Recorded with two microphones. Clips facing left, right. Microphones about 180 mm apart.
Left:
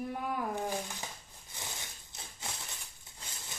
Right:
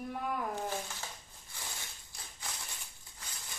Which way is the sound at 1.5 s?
20° left (ahead or behind).